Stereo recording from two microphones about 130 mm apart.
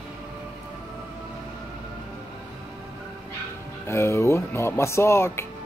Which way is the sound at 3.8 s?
20° left (ahead or behind).